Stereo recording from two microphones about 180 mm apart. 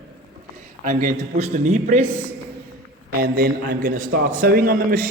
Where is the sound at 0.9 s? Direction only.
45° right (ahead or behind).